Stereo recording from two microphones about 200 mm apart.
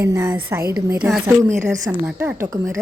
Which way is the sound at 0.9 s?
5° right (ahead or behind).